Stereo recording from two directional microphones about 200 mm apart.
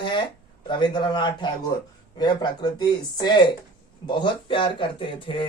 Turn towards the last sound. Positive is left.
turn(degrees=25)  # may be behind; listen again after turning